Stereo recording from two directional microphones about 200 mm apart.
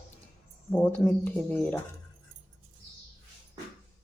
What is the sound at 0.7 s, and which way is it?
Speech, 10° left (ahead or behind).